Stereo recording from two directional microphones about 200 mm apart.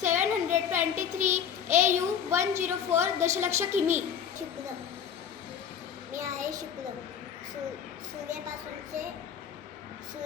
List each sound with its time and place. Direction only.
0.1 s a sound: 10° right (ahead or behind)
1.7 s a child's voice: 15° right (ahead or behind)
6.1 s a child's voice: 15° right (ahead or behind)